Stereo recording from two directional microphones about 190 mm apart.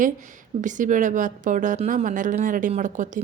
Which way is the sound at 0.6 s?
40° right (ahead or behind).